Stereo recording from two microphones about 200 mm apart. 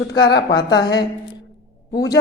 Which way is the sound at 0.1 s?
20° left (ahead or behind).